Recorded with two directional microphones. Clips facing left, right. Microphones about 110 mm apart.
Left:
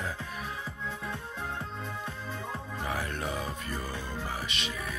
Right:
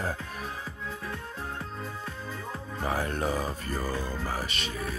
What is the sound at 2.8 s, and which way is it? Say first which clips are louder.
Speech: right 6 dB; 35° right (ahead or behind).